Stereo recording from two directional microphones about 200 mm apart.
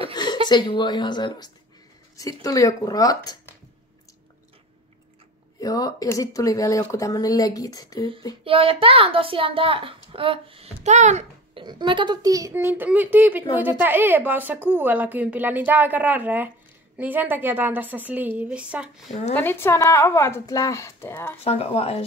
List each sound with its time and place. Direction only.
0.1 s a sound: 20° left (ahead or behind)
0.5 s a woman's voice: 20° left (ahead or behind)
5.6 s speech: 20° left (ahead or behind)
8.5 s a woman's voice: 25° right (ahead or behind)
11.6 s speech: 25° right (ahead or behind); by 19.1 s 5° right (ahead or behind)
19.3 s speech: 10° left (ahead or behind)
21.5 s speech: 30° left (ahead or behind)